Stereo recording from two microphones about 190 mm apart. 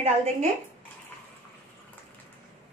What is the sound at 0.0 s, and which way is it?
Speech, 35° right (ahead or behind).